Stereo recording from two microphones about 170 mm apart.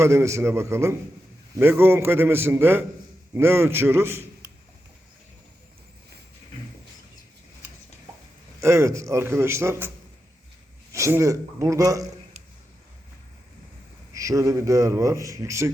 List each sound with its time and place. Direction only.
0.0 s a man's voice: 15° right (ahead or behind)
8.6 s a man's voice: 15° right (ahead or behind)
10.9 s a man's voice: 15° right (ahead or behind)
14.1 s a man's voice: 20° right (ahead or behind)